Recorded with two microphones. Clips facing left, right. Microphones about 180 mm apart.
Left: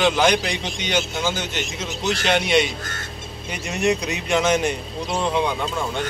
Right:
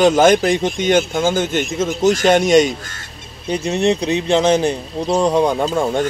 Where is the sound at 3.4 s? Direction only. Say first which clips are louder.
Right 6 dB; 30° right (ahead or behind).